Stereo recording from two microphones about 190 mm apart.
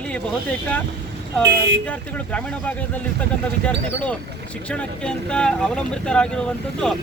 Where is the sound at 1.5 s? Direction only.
60° right (ahead or behind).